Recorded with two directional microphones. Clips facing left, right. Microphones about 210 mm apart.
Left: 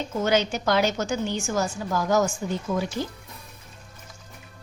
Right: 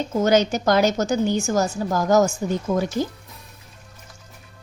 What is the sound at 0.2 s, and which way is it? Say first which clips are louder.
A woman's voice: right 5 dB; 40° right (ahead or behind).